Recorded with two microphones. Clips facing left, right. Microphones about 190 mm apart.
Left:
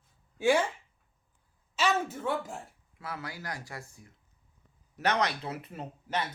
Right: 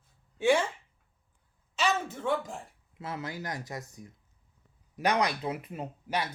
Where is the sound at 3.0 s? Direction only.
20° right (ahead or behind).